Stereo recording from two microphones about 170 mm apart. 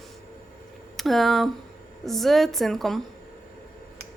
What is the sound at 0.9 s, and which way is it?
A woman's voice, centre (ahead or behind).